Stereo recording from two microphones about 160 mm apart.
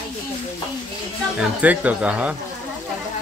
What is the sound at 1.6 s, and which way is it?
Speech, 10° right (ahead or behind).